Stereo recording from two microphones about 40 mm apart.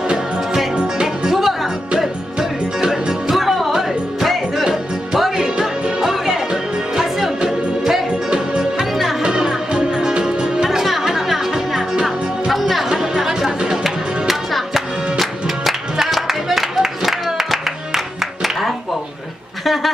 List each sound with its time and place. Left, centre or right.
1.0 s music: centre
2.8 s music: centre
3.3 s music: centre
5.1 s music: centre
8.1 s music: right
10.6 s music: centre
12.9 s music: centre
13.8 s music: centre
19.6 s duck: centre